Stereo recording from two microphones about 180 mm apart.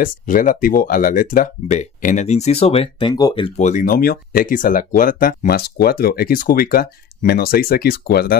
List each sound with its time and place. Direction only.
0.0 s speech: 50° left (ahead or behind); by 3.5 s 25° left (ahead or behind)
3.5 s speech: 45° left (ahead or behind); by 8.4 s 60° left (ahead or behind)